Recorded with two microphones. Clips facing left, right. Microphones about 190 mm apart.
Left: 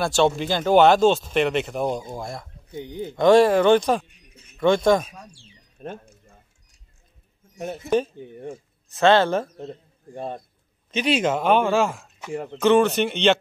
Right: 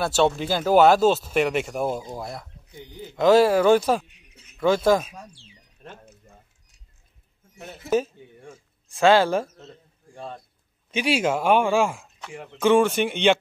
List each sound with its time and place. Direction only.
0.0 s speech: 5° right (ahead or behind)
2.8 s speech: 60° left (ahead or behind)
3.2 s speech: 5° right (ahead or behind)
5.8 s a sound: 20° left (ahead or behind)
7.8 s speech: 5° right (ahead or behind)
9.7 s a man's voice: 55° left (ahead or behind)
10.9 s speech: 10° right (ahead or behind)